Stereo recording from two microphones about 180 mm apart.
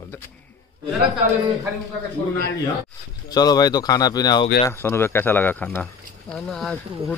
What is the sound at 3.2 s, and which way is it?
Speech, 20° left (ahead or behind).